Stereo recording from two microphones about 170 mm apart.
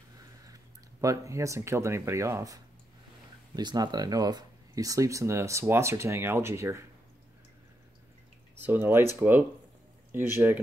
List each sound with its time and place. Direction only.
1.0 s speech: 20° right (ahead or behind)
8.5 s speech: 10° right (ahead or behind)
10.1 s speech: 10° right (ahead or behind)